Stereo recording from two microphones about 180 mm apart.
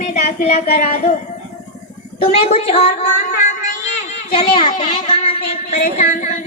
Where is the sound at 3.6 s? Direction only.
40° left (ahead or behind).